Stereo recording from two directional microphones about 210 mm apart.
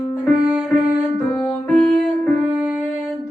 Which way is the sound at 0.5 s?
5° right (ahead or behind).